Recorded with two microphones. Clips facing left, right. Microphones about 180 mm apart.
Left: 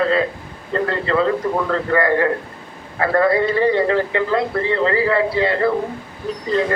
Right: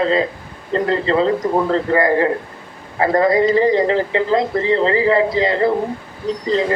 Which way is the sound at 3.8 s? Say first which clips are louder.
Right 2 dB; 30° right (ahead or behind).